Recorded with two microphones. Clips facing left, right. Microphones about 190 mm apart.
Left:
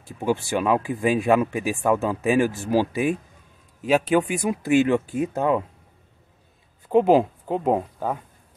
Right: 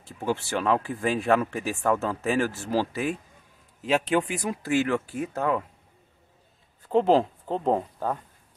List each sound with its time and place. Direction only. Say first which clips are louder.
0.0 s speech: left 4 dB; 15° left (ahead or behind)
6.9 s speech: left 4 dB; 10° left (ahead or behind)